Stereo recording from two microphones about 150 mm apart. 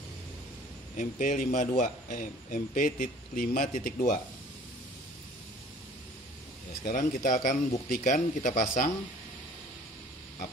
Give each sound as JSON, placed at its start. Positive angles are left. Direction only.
{"t": 0.9, "sound": "speech", "side_deg": 55}
{"t": 6.8, "sound": "speech", "side_deg": 65}